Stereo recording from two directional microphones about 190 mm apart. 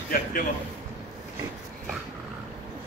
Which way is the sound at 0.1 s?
45° left (ahead or behind).